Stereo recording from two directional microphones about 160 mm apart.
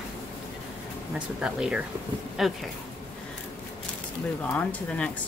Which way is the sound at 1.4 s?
5° right (ahead or behind).